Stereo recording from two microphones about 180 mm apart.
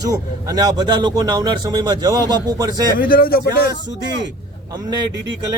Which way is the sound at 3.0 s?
50° left (ahead or behind).